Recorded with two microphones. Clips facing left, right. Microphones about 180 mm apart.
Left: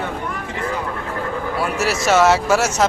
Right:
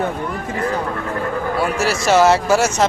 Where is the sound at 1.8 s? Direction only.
Centre (ahead or behind).